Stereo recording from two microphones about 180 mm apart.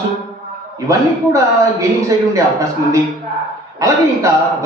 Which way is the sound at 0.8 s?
15° right (ahead or behind).